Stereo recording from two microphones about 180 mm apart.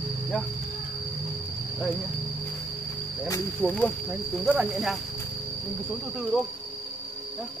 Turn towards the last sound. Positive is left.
turn(degrees=-5)  # may be behind; listen again after turning